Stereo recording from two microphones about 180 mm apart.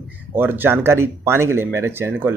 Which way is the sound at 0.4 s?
10° right (ahead or behind).